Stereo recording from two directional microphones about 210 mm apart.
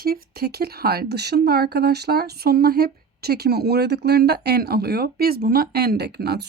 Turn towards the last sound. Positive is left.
turn(degrees=-50)  # may be behind; listen again after turning